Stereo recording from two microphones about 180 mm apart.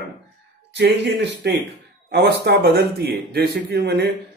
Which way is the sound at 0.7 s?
75° right (ahead or behind).